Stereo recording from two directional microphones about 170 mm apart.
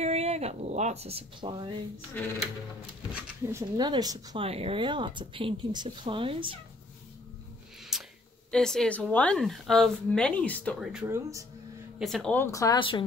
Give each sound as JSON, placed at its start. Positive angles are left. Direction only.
{"t": 0.0, "sound": "speech", "side_deg": -35}
{"t": 3.7, "sound": "speech", "side_deg": -25}
{"t": 4.5, "sound": "speech", "side_deg": -35}
{"t": 7.9, "sound": "a sound", "side_deg": 0}
{"t": 8.5, "sound": "a woman's voice", "side_deg": 5}
{"t": 10.9, "sound": "a woman's voice", "side_deg": -5}
{"t": 11.1, "sound": "speech", "side_deg": -20}
{"t": 12.0, "sound": "a woman's voice", "side_deg": 0}
{"t": 12.4, "sound": "speech", "side_deg": 20}